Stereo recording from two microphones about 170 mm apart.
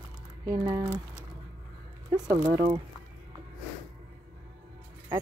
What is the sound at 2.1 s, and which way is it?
Speech, 25° right (ahead or behind).